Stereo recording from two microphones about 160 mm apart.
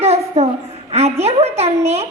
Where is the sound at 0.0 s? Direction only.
40° right (ahead or behind).